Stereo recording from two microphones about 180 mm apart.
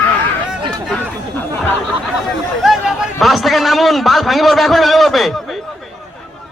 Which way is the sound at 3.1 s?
Centre (ahead or behind).